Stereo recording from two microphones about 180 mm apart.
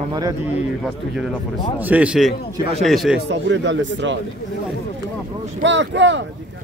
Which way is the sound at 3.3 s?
90° right.